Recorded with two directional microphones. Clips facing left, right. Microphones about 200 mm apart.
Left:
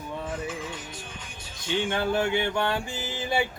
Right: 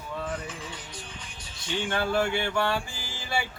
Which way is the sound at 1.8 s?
20° left (ahead or behind).